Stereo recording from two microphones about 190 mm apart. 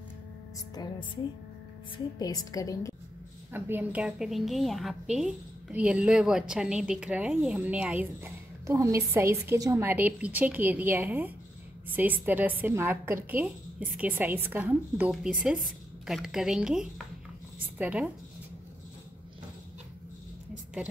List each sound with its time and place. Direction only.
0.7 s a woman's voice: 25° left (ahead or behind)
3.5 s a woman's voice: 10° right (ahead or behind)